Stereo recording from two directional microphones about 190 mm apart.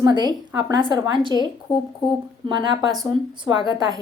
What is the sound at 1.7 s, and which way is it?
Speech, 20° left (ahead or behind).